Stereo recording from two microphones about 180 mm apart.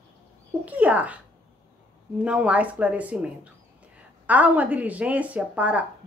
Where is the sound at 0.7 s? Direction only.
10° right (ahead or behind).